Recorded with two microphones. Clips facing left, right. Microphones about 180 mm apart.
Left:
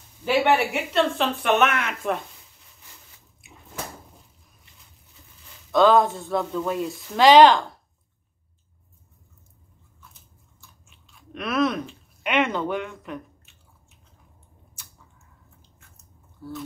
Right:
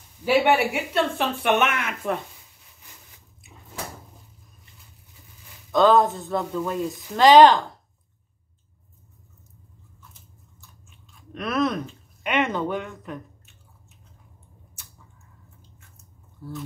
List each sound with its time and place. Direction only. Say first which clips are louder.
0.2 s speech: right 1 dB; 5° right (ahead or behind)
5.8 s speech: even; centre (ahead or behind)
11.3 s speech: left 1 dB; 5° left (ahead or behind)